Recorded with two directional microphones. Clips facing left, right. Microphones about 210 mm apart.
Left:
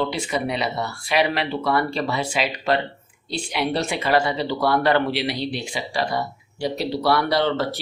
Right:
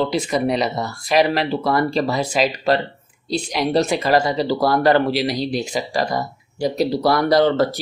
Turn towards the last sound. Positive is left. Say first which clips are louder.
# right 5 dB
turn(degrees=-40)  # may be behind; listen again after turning